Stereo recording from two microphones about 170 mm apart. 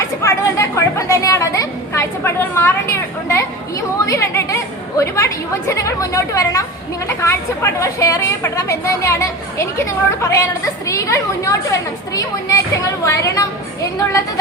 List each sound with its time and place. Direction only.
0.0 s a woman's voice: 15° left (ahead or behind)